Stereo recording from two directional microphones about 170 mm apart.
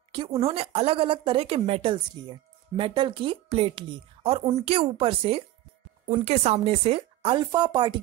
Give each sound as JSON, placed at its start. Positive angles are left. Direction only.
{"t": 0.4, "sound": "speech", "side_deg": -35}